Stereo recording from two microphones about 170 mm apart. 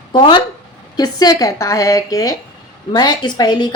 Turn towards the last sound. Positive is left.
turn(degrees=25)  # may be behind; listen again after turning